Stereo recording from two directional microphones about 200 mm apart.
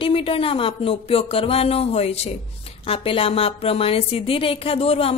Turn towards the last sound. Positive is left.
turn(degrees=30)  # may be behind; listen again after turning